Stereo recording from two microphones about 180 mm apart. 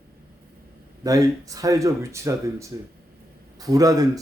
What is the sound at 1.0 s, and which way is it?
A man's voice, 20° right (ahead or behind).